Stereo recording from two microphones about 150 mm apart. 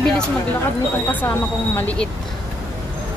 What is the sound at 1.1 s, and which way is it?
A woman's voice, 10° left (ahead or behind).